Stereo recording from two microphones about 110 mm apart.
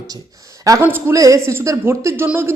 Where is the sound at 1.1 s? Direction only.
30° right (ahead or behind).